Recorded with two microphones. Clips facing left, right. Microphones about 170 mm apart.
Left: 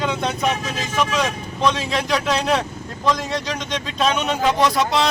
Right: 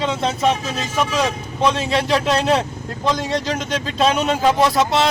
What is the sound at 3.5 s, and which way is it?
Speech, 30° right (ahead or behind).